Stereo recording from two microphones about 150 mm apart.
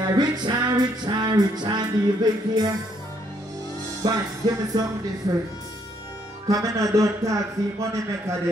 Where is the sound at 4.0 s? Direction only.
25° right (ahead or behind).